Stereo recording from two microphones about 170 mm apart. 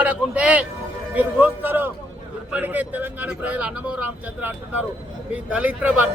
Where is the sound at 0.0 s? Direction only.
10° right (ahead or behind).